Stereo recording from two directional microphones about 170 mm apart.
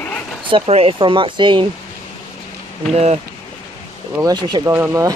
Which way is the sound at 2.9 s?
40° right (ahead or behind).